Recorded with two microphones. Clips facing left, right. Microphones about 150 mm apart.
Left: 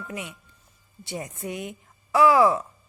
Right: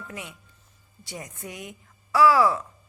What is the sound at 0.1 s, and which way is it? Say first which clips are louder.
A woman's voice: left 4 dB; 20° left (ahead or behind).